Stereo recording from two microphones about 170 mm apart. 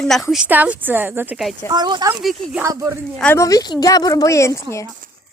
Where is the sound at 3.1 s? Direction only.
10° left (ahead or behind).